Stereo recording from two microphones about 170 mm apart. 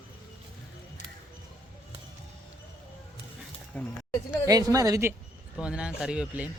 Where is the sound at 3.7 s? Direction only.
10° left (ahead or behind).